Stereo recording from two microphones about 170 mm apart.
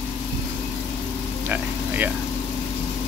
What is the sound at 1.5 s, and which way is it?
Speech, 10° right (ahead or behind).